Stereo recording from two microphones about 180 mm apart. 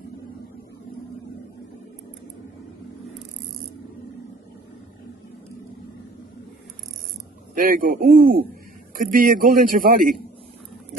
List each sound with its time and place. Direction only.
7.5 s a man's voice: 50° right (ahead or behind)